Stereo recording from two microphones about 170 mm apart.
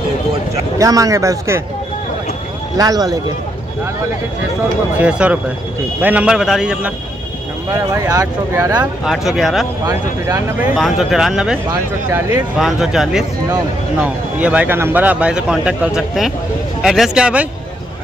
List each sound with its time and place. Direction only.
0.7 s speech: 20° right (ahead or behind)
2.8 s speech: 20° right (ahead or behind)
4.9 s a man's voice: 10° right (ahead or behind)
7.7 s speech: 20° right (ahead or behind)
9.0 s a man's voice: centre (ahead or behind)
9.8 s speech: 20° right (ahead or behind)
10.6 s a man's voice: centre (ahead or behind)
11.7 s speech: 20° right (ahead or behind)
12.5 s a man's voice: 5° right (ahead or behind)